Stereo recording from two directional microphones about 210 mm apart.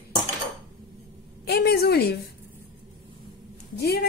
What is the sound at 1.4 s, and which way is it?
Speech, 50° left (ahead or behind).